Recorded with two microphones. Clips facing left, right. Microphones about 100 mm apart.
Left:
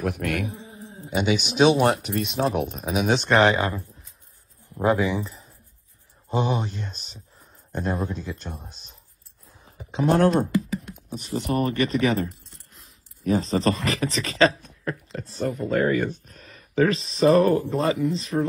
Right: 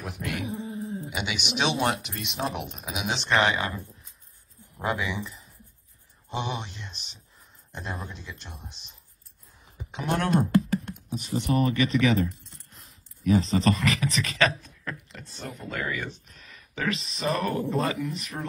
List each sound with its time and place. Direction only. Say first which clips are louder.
0.0 s dog: left 7 dB; 55° left (ahead or behind)
0.5 s cat: right 6 dB; centre (ahead or behind)
1.1 s speech: left 12 dB; 40° left (ahead or behind)
11.3 s speech: left 1 dB; 45° left (ahead or behind); by 18.4 s 30° left (ahead or behind)